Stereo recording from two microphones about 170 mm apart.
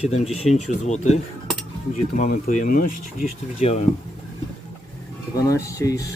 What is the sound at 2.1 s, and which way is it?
Speech, 55° left (ahead or behind).